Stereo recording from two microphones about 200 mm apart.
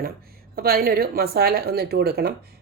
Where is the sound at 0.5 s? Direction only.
50° right (ahead or behind).